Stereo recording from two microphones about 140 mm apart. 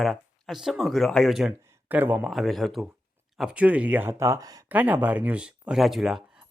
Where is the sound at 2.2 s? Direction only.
Centre (ahead or behind); by 4.6 s 25° right (ahead or behind).